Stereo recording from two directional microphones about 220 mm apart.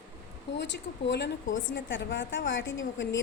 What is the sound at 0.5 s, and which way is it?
A woman's voice, 55° left (ahead or behind).